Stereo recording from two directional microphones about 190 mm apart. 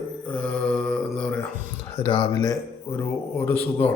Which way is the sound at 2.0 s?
25° left (ahead or behind).